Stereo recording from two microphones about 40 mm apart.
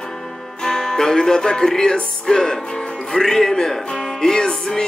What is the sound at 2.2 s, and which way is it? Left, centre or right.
Music, centre.